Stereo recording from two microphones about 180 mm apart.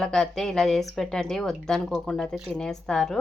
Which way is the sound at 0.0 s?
Centre (ahead or behind).